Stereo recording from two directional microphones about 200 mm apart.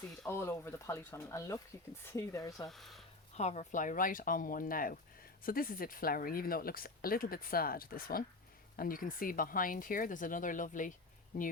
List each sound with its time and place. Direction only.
0.3 s speech: 10° left (ahead or behind)
2.6 s speech: centre (ahead or behind)
3.3 s speech: 35° left (ahead or behind)